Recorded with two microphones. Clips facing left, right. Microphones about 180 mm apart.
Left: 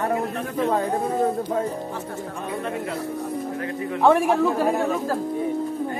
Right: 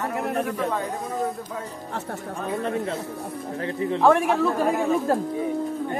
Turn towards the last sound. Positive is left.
turn(degrees=-10)  # may be behind; listen again after turning